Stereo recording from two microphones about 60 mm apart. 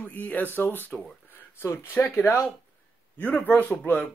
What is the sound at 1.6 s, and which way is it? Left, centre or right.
Speech, left.